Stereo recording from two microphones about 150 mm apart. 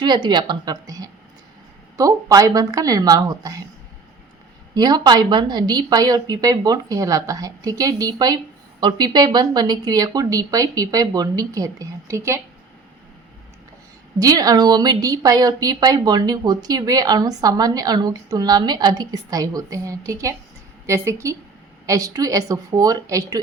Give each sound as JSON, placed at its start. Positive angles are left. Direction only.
{"t": 0.0, "sound": "a woman's voice", "side_deg": -30}
{"t": 4.7, "sound": "a woman's voice", "side_deg": -25}
{"t": 14.2, "sound": "a woman's voice", "side_deg": -25}